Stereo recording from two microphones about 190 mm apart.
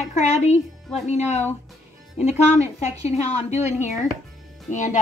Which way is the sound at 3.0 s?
35° left (ahead or behind).